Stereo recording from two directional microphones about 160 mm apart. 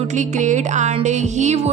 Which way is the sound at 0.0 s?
50° right (ahead or behind).